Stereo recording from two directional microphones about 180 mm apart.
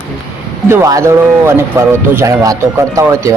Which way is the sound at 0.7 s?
15° right (ahead or behind).